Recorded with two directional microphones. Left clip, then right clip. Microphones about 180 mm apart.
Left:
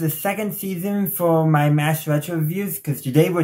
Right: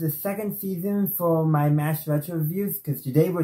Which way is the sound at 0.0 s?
20° left (ahead or behind).